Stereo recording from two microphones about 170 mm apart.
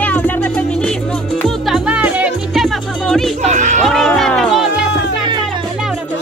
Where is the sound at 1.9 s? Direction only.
10° right (ahead or behind).